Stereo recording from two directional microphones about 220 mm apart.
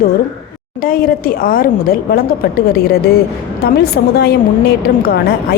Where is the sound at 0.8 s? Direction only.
40° left (ahead or behind).